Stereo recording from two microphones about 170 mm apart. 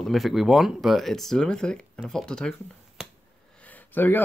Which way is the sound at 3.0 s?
5° right (ahead or behind).